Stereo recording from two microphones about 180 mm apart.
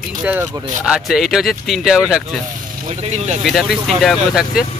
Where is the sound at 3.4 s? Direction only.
Centre (ahead or behind).